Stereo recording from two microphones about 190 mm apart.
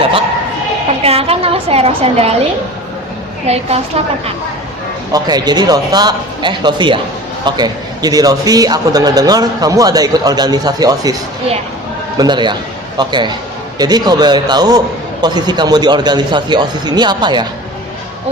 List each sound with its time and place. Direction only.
1.0 s a woman's voice: 30° right (ahead or behind)
5.1 s a man's voice: 20° right (ahead or behind)
12.1 s a man's voice: 20° right (ahead or behind)